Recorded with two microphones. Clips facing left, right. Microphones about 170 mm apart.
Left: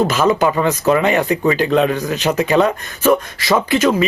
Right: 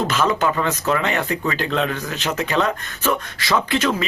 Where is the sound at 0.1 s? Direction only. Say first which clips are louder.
Left 5 dB; 10° left (ahead or behind).